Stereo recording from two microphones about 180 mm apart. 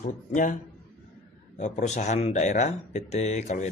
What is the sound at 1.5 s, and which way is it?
Speech, 40° left (ahead or behind).